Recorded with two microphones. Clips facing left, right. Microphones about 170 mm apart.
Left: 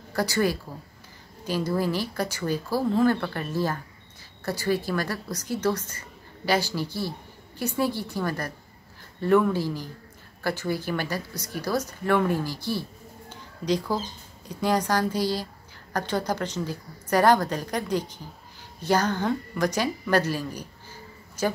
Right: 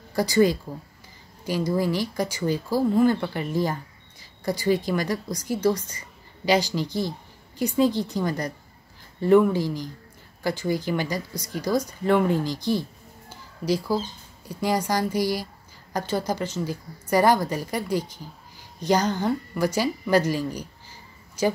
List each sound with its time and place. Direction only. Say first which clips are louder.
0.1 s a woman's voice: right 5 dB; 15° right (ahead or behind)
13.3 s a sound: right 1 dB; 10° right (ahead or behind)
14.5 s a woman's voice: even; 10° right (ahead or behind)